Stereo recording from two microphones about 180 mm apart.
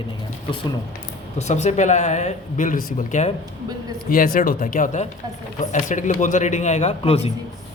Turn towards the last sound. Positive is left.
turn(degrees=35)  # may be behind; listen again after turning